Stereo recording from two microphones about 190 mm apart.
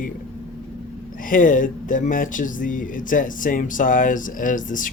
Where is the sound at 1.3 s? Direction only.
45° left (ahead or behind).